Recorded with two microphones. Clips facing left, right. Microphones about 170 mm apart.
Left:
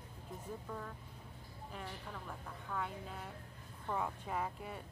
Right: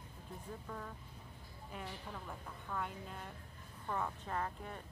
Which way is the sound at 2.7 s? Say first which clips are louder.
Left 1 dB; centre (ahead or behind).